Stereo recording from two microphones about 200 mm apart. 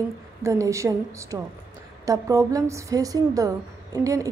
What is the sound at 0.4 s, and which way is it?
A woman's voice, 15° right (ahead or behind).